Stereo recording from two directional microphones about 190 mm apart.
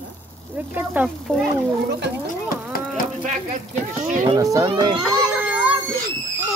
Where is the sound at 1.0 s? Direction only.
10° right (ahead or behind).